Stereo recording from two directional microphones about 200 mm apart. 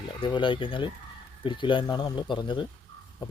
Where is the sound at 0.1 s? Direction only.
25° left (ahead or behind).